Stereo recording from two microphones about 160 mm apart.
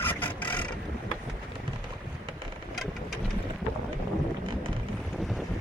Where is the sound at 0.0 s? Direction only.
10° left (ahead or behind).